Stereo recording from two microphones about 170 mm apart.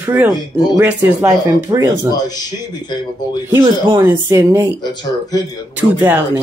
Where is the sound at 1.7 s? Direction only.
25° right (ahead or behind).